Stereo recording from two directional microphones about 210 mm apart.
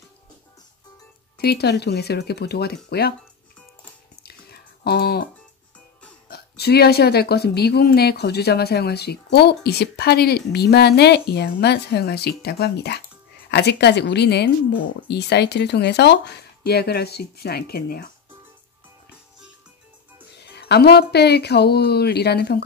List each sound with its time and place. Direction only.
1.4 s a woman's voice: 50° left (ahead or behind)
4.2 s whispering: 50° left (ahead or behind)
6.2 s a woman's voice: 50° left (ahead or behind)
20.3 s a woman's voice: 55° left (ahead or behind)